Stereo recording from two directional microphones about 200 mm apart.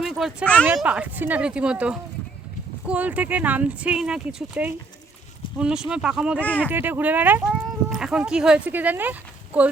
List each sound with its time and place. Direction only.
0.0 s speech: centre (ahead or behind)
6.4 s speech: 10° left (ahead or behind)
6.7 s speech: 10° right (ahead or behind)